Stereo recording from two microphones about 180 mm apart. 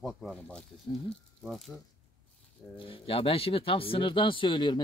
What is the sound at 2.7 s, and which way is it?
Speech, 30° left (ahead or behind).